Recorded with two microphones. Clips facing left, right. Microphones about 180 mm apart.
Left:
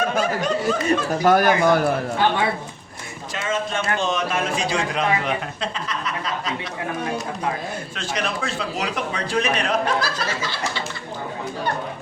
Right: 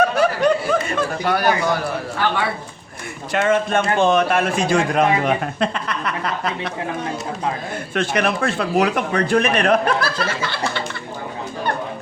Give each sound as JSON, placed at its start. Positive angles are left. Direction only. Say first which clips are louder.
{"t": 0.2, "sound": "snicker", "louder": "right 5 dB", "side_deg": -60}
{"t": 0.9, "sound": "speech", "louder": "left 3 dB", "side_deg": 45}
{"t": 2.2, "sound": "speech", "louder": "left 1 dB", "side_deg": 20}
{"t": 3.3, "sound": "speech", "louder": "right 8 dB", "side_deg": -60}
{"t": 7.9, "sound": "speech", "louder": "right 9 dB", "side_deg": -60}